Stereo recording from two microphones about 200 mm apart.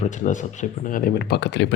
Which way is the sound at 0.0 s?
40° left (ahead or behind).